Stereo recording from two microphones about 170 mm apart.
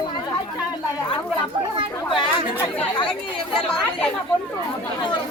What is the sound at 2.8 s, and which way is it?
Speech, 30° left (ahead or behind).